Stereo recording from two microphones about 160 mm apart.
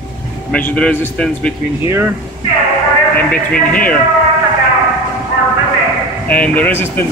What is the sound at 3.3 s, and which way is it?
Speech, 10° left (ahead or behind).